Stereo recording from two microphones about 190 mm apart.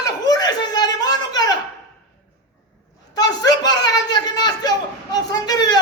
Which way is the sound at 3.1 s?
20° left (ahead or behind).